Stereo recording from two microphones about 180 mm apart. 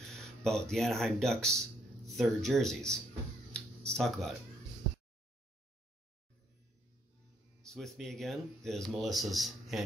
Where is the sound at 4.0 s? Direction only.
Centre (ahead or behind).